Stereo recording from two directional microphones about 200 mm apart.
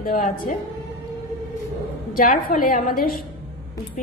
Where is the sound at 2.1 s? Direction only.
45° left (ahead or behind).